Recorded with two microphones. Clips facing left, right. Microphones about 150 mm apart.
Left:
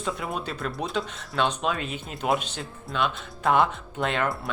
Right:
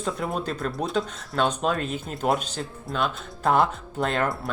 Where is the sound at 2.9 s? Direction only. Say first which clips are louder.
Even; 40° right (ahead or behind).